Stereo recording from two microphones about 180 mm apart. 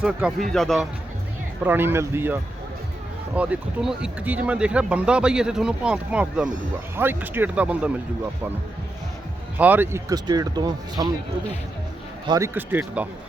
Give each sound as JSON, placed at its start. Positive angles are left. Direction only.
{"t": 0.0, "sound": "speech", "side_deg": 0}
{"t": 1.6, "sound": "speech", "side_deg": -10}
{"t": 9.6, "sound": "speech", "side_deg": -10}
{"t": 12.3, "sound": "speech", "side_deg": -15}